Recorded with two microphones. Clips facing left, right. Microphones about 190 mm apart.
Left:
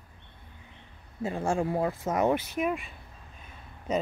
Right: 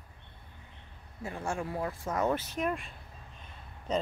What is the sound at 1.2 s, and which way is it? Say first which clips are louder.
Speech: left 7 dB; 25° left (ahead or behind).